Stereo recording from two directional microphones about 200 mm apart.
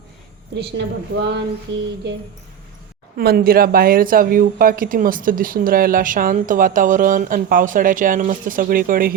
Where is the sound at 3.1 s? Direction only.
50° right (ahead or behind).